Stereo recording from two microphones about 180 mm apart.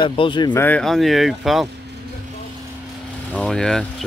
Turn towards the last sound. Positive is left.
turn(degrees=0)  # may be behind; listen again after turning